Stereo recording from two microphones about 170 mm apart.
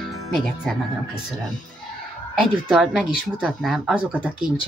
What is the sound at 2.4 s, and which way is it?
Speech, 5° right (ahead or behind).